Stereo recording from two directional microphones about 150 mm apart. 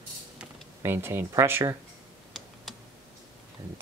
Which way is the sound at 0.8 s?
15° right (ahead or behind).